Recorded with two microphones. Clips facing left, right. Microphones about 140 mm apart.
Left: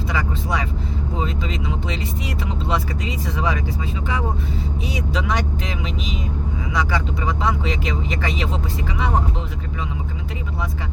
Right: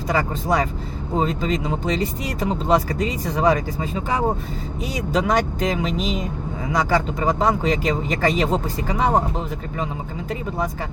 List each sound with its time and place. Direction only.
0.1 s speech: 40° right (ahead or behind)
4.9 s speech: 45° right (ahead or behind)